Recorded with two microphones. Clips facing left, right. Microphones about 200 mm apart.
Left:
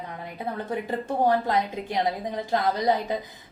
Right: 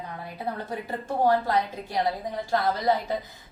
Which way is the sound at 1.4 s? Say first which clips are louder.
Left 1 dB; 20° left (ahead or behind).